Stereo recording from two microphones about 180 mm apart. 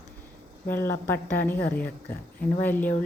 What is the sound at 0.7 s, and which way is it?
Speech, 15° left (ahead or behind).